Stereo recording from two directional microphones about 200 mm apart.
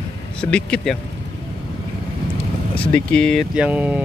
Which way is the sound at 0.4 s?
5° left (ahead or behind).